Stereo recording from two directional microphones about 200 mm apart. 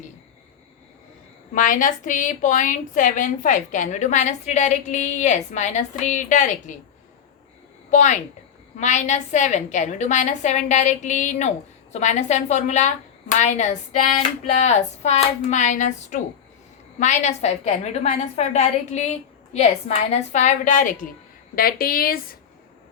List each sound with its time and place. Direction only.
1.5 s a woman's voice: 40° left (ahead or behind)
7.9 s a woman's voice: 35° left (ahead or behind)